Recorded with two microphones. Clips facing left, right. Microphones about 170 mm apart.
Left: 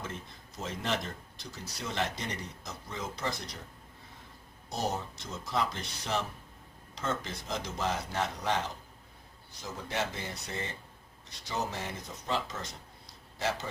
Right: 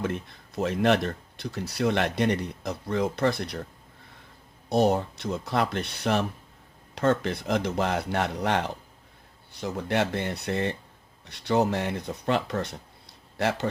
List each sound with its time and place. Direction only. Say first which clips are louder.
0.0 s speech: right 11 dB; 65° right (ahead or behind)
4.7 s speech: right 12 dB; 65° right (ahead or behind)